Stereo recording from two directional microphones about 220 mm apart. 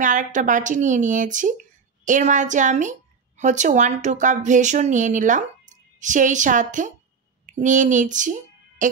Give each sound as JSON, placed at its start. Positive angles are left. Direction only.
{"t": 0.0, "sound": "a child's voice", "side_deg": -35}